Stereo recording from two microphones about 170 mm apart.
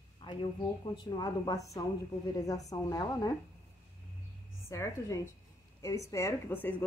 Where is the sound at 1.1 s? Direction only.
25° left (ahead or behind).